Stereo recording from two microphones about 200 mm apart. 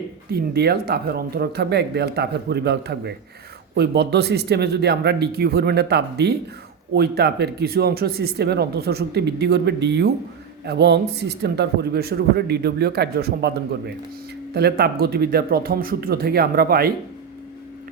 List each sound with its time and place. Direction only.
0.3 s speech: 50° right (ahead or behind)